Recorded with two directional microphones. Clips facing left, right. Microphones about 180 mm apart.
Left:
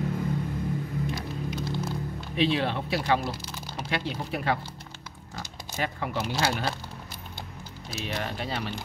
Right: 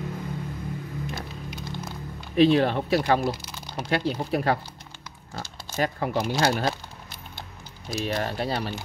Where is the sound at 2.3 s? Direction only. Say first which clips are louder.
Right 7 dB; 45° right (ahead or behind).